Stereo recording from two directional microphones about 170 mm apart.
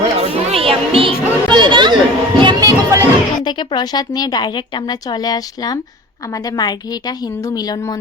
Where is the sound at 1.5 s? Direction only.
25° right (ahead or behind).